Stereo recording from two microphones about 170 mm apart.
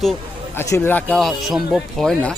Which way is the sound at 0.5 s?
15° left (ahead or behind).